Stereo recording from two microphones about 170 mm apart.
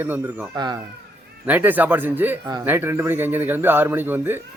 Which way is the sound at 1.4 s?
10° right (ahead or behind).